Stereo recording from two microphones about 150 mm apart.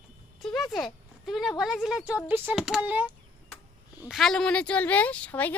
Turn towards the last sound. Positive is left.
turn(degrees=10)  # may be behind; listen again after turning